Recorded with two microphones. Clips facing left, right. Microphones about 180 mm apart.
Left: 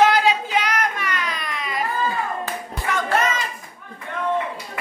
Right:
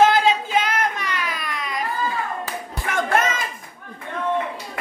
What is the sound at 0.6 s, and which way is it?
Child singing, 25° right (ahead or behind).